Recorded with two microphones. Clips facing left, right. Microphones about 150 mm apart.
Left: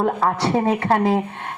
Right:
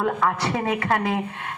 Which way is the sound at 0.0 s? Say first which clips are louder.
Left 3 dB; 35° left (ahead or behind).